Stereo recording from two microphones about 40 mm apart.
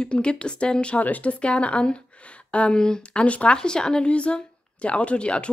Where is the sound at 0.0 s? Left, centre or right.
Left.